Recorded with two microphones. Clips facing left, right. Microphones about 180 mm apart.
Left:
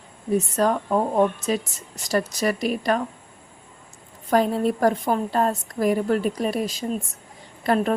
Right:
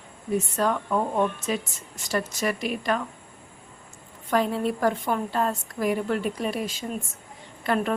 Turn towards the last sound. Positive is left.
turn(degrees=40)  # may be behind; listen again after turning